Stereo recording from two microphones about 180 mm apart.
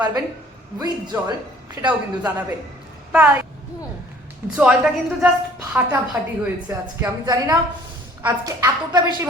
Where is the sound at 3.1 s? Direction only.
5° right (ahead or behind).